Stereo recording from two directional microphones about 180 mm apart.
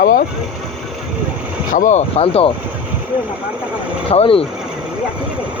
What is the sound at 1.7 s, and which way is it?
Speech, 45° left (ahead or behind).